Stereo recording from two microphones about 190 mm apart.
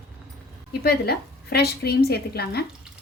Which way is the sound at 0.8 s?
55° left (ahead or behind).